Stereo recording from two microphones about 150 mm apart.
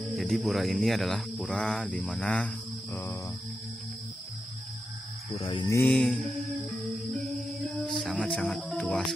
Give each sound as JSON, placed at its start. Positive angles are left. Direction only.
{"t": 0.0, "sound": "speech", "side_deg": 0}
{"t": 5.3, "sound": "cricket", "side_deg": 35}
{"t": 5.7, "sound": "mantra", "side_deg": 15}
{"t": 5.9, "sound": "music", "side_deg": 0}